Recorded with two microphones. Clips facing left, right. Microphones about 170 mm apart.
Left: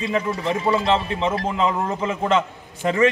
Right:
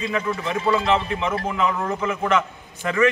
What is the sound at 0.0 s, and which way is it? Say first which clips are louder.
Speech: left 2 dB; 30° left (ahead or behind).